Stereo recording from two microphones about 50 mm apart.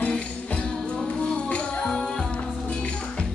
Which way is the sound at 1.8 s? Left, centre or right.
Centre.